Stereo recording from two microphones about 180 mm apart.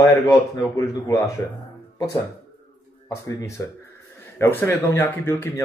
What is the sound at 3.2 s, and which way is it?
Speech, 15° left (ahead or behind).